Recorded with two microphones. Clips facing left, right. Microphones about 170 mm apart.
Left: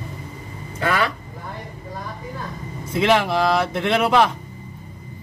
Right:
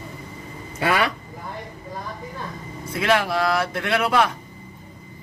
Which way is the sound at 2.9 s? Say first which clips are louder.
Left 3 dB; 20° left (ahead or behind).